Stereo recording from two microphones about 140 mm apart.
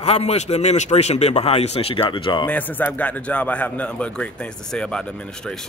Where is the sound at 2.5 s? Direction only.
10° left (ahead or behind).